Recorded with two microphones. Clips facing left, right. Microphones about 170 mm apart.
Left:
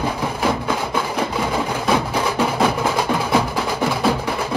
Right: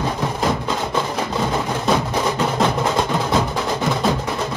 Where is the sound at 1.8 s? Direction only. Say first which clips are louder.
Right 1 dB; 10° left (ahead or behind).